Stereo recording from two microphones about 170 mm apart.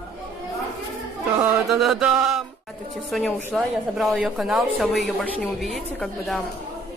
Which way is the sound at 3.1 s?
5° left (ahead or behind).